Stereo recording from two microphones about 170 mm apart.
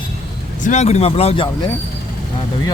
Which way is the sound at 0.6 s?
40° left (ahead or behind).